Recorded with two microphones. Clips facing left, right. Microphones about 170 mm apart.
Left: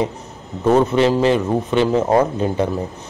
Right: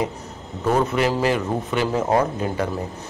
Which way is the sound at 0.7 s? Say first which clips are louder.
Left 6 dB; 25° left (ahead or behind).